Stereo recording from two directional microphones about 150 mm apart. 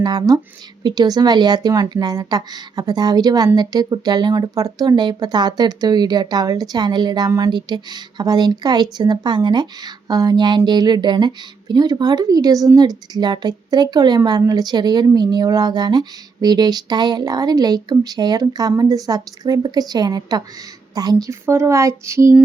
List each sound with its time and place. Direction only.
0.0 s a woman's voice: 25° right (ahead or behind)